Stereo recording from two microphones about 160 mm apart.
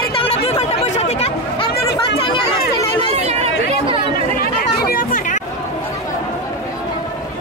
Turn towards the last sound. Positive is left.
turn(degrees=55)  # may be behind; listen again after turning